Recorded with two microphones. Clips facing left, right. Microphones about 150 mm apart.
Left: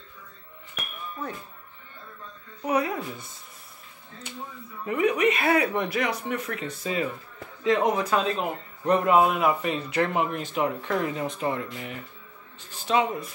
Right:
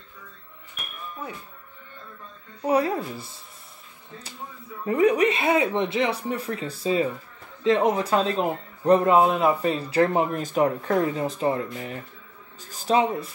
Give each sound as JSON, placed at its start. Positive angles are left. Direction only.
{"t": 2.6, "sound": "speech", "side_deg": -30}
{"t": 4.8, "sound": "speech", "side_deg": -35}
{"t": 5.4, "sound": "speech", "side_deg": -20}